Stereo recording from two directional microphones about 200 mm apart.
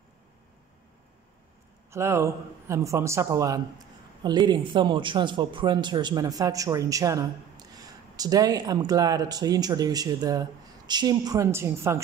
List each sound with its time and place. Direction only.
1.9 s speech: 15° right (ahead or behind)